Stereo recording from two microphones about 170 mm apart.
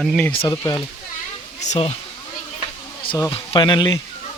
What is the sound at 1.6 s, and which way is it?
Speech, 40° left (ahead or behind).